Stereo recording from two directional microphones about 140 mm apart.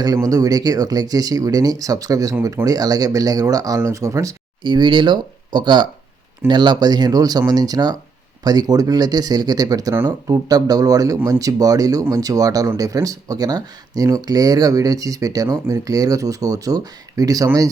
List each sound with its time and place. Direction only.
0.0 s speech: 25° right (ahead or behind)
4.6 s speech: 35° right (ahead or behind)